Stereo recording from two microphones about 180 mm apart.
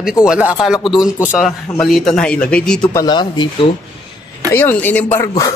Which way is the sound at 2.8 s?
25° left (ahead or behind).